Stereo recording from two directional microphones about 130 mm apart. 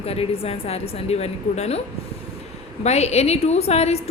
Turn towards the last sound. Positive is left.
turn(degrees=55)  # may be behind; listen again after turning